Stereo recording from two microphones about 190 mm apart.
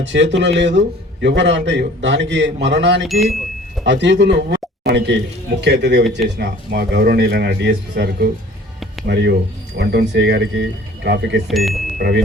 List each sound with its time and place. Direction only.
0.1 s a man's voice: 70° right (ahead or behind)
3.0 s speech: centre (ahead or behind)
3.8 s speech: 70° right (ahead or behind)
11.4 s speech: centre (ahead or behind)
11.9 s music: 55° right (ahead or behind)